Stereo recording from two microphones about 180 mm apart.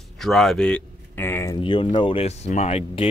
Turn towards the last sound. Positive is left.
turn(degrees=35)  # may be behind; listen again after turning